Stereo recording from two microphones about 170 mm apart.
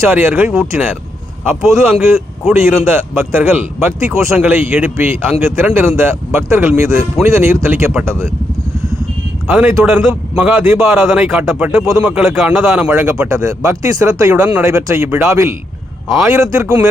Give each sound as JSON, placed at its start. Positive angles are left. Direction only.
{"t": 0.0, "sound": "speech", "side_deg": -15}
{"t": 9.5, "sound": "a man's voice", "side_deg": -10}
{"t": 12.9, "sound": "speech", "side_deg": -15}
{"t": 14.4, "sound": "a man's voice", "side_deg": -10}